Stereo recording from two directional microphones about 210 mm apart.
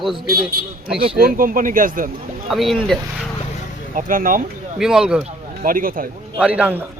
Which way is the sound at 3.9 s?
40° right (ahead or behind).